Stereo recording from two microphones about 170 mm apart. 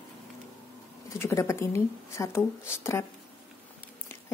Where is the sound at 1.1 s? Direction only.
15° left (ahead or behind).